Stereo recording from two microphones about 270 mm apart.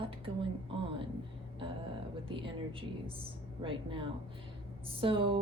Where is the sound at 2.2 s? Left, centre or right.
Centre.